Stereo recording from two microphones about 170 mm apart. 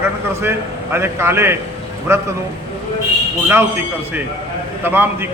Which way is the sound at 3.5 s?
15° right (ahead or behind).